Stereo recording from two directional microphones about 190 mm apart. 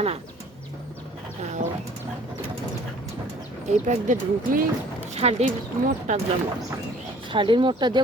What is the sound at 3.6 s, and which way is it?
Speech, 40° right (ahead or behind).